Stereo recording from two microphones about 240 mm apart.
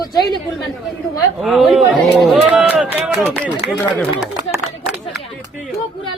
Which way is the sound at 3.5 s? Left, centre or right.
Centre.